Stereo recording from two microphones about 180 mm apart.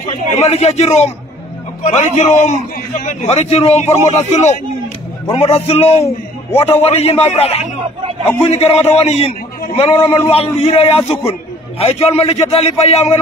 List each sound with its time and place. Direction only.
0.4 s a man's voice: 35° left (ahead or behind)